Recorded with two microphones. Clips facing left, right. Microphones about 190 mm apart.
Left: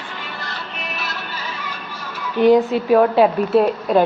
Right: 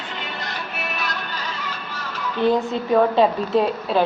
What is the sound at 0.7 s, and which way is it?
Music, centre (ahead or behind).